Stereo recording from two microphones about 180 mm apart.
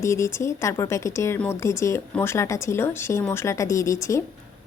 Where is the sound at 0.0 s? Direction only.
15° left (ahead or behind).